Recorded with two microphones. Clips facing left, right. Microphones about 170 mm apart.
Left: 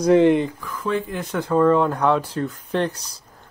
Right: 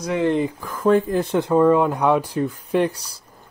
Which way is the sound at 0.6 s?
45° right (ahead or behind).